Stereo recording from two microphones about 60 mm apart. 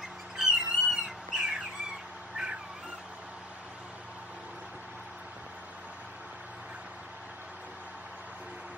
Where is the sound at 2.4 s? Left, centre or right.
Centre.